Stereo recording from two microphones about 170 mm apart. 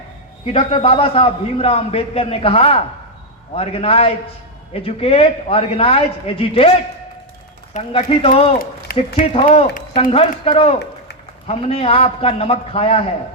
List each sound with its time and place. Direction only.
0.4 s a man's voice: 30° left (ahead or behind)
8.9 s a sound: 55° left (ahead or behind)
9.2 s a man's voice: 35° left (ahead or behind)